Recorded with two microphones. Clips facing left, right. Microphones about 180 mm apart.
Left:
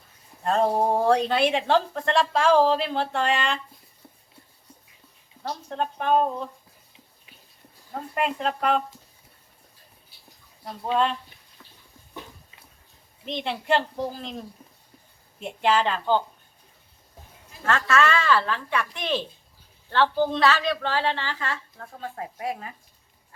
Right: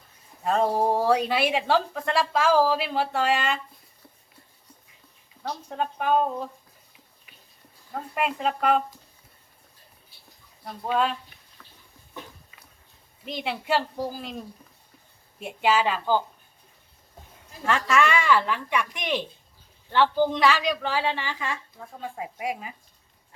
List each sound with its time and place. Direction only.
0.4 s a woman's voice: 5° right (ahead or behind)
5.6 s a woman's voice: 5° right (ahead or behind)
7.3 s a sound: 25° left (ahead or behind)
8.1 s a woman's voice: 5° right (ahead or behind)
13.2 s a woman's voice: 5° right (ahead or behind)
15.4 s a woman's voice: 5° right (ahead or behind)
17.7 s a woman's voice: 15° right (ahead or behind)